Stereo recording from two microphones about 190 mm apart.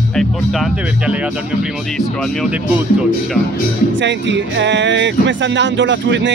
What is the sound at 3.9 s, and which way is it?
Speech, 70° right (ahead or behind).